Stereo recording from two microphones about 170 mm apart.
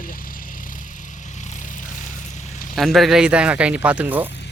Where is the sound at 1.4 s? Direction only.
45° left (ahead or behind).